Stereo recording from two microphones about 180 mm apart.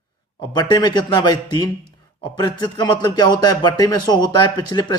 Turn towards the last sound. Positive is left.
turn(degrees=25)  # may be behind; listen again after turning